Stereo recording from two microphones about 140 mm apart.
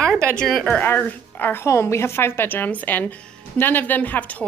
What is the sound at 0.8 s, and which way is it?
A woman's voice, 15° left (ahead or behind).